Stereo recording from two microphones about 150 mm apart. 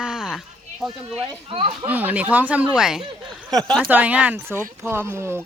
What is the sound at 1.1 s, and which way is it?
Speech, 40° right (ahead or behind).